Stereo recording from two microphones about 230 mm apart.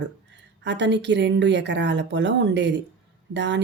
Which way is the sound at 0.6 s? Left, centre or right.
Right.